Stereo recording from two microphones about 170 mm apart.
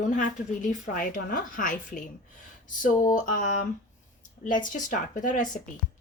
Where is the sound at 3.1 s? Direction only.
50° left (ahead or behind).